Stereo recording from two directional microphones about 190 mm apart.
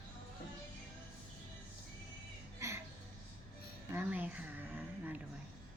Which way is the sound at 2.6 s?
15° right (ahead or behind).